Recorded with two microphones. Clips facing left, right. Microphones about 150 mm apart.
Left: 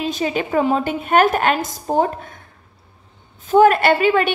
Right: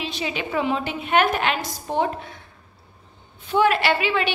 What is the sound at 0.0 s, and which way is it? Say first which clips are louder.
A woman's voice: left 7 dB; 45° left (ahead or behind).